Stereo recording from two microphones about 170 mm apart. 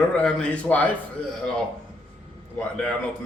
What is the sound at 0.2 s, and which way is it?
Speech, 5° left (ahead or behind).